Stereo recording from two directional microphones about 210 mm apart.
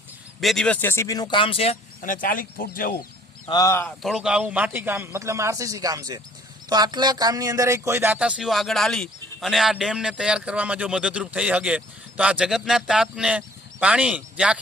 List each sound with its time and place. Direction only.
0.3 s speech: centre (ahead or behind); by 3.0 s 40° left (ahead or behind)
3.5 s speech: 15° left (ahead or behind)
4.0 s a man's voice: 5° right (ahead or behind)